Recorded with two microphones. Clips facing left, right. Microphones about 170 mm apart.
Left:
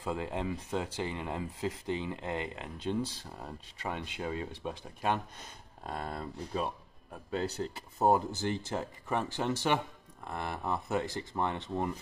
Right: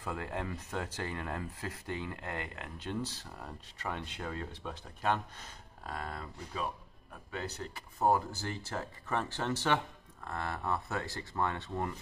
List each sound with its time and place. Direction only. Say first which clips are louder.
0.0 s speech: left 3 dB; 20° left (ahead or behind)
5.9 s speech: left 3 dB; 30° left (ahead or behind)